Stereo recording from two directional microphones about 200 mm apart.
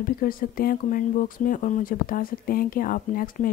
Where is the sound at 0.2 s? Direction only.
45° left (ahead or behind).